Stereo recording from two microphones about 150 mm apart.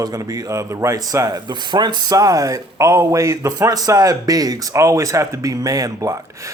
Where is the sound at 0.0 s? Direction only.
25° right (ahead or behind).